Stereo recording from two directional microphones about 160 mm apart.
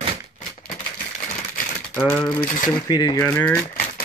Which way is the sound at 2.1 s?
10° left (ahead or behind).